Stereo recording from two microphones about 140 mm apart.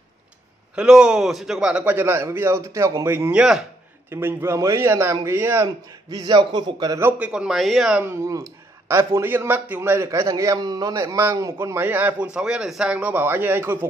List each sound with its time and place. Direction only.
0.7 s a man's voice: 5° right (ahead or behind)
4.1 s a man's voice: 15° right (ahead or behind)
6.0 s a man's voice: 30° right (ahead or behind)
7.0 s speech: 15° right (ahead or behind)
8.0 s a man's voice: 20° right (ahead or behind)